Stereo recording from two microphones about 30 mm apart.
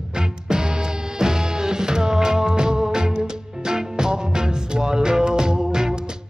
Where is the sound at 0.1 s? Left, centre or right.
Right.